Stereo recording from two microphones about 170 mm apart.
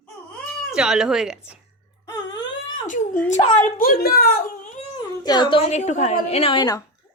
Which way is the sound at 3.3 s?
40° left (ahead or behind).